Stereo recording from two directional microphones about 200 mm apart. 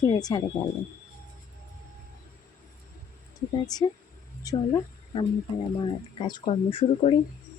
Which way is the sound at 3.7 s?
20° left (ahead or behind).